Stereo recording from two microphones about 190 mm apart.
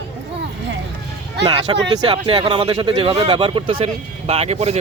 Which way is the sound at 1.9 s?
25° right (ahead or behind).